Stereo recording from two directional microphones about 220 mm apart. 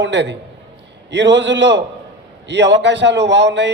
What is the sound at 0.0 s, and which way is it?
A man's voice, 55° right (ahead or behind).